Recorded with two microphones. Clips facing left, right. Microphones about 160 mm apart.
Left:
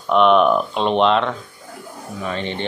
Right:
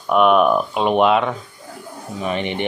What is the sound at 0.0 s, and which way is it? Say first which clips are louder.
Speech: even; 10° right (ahead or behind).